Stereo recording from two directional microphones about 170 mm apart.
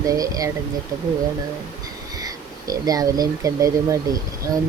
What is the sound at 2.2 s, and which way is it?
Speech, 20° right (ahead or behind).